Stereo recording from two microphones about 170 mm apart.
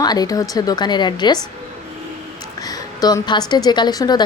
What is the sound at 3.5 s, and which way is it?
Speech, 25° left (ahead or behind).